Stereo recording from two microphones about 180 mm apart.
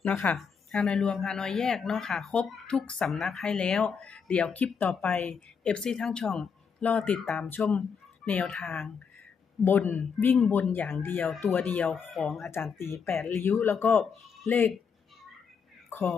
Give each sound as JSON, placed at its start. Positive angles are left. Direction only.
{"t": 0.0, "sound": "speech", "side_deg": 10}
{"t": 12.8, "sound": "speech", "side_deg": 15}